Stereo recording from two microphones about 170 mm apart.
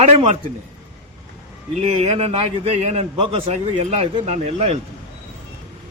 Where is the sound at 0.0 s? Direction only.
40° right (ahead or behind).